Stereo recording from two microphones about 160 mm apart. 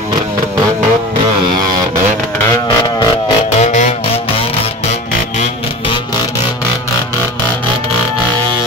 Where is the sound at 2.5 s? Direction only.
25° left (ahead or behind).